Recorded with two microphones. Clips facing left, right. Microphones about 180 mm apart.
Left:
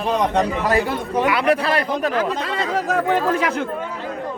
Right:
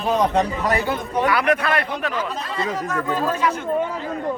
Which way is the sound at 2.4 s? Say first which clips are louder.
Left 3 dB; 90° left.